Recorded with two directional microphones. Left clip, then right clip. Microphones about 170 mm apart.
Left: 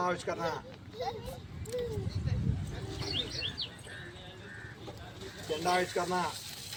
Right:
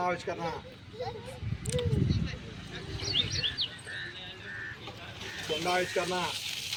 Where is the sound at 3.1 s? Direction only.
70° left (ahead or behind).